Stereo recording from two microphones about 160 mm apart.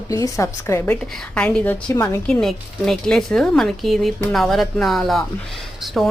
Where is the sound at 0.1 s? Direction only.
20° left (ahead or behind).